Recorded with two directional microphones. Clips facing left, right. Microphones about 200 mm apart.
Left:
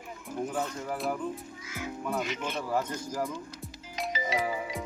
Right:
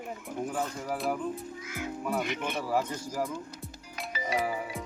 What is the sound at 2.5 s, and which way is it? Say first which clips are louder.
Speech: right 1 dB; 10° right (ahead or behind).